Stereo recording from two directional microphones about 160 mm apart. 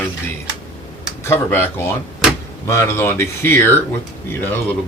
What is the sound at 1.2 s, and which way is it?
Speech, 15° left (ahead or behind).